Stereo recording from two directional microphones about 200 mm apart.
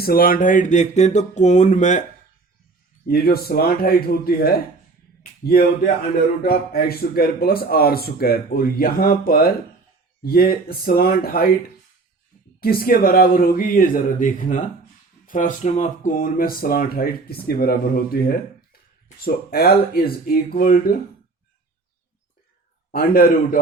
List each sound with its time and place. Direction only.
0.0 s speech: 45° left (ahead or behind)
3.1 s a man's voice: 50° left (ahead or behind)
12.5 s a man's voice: 50° left (ahead or behind)
22.9 s a man's voice: 45° left (ahead or behind)